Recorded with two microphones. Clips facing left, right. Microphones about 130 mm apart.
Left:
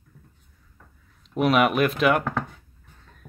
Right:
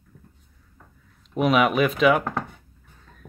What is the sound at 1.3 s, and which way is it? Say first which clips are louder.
Speech: even; centre (ahead or behind).